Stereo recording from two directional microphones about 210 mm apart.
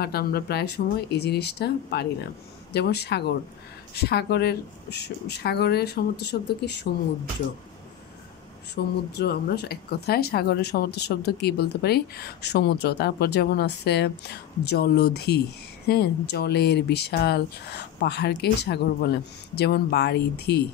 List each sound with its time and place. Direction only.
0.0 s speech: 50° left (ahead or behind)
8.7 s speech: 50° left (ahead or behind)